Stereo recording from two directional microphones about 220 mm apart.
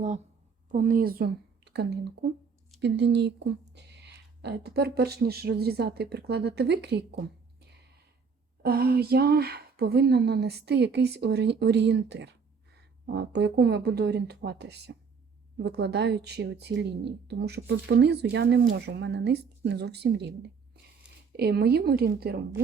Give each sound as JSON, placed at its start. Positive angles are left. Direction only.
{"t": 0.7, "sound": "speech", "side_deg": -40}
{"t": 8.6, "sound": "speech", "side_deg": -45}